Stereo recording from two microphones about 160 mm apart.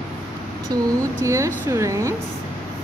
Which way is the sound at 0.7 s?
25° right (ahead or behind).